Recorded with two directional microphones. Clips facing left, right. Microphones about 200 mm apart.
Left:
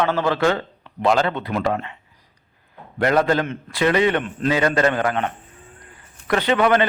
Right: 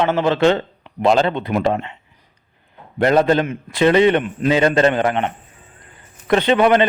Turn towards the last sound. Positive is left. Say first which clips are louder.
# right 4 dB
turn(degrees=-20)  # may be behind; listen again after turning